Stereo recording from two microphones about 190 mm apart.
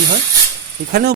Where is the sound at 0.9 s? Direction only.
55° right (ahead or behind).